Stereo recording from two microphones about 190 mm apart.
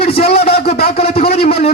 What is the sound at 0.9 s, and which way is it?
Speech, 30° left (ahead or behind).